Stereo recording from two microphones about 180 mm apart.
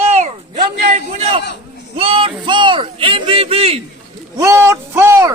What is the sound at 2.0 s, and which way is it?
Music, 30° right (ahead or behind).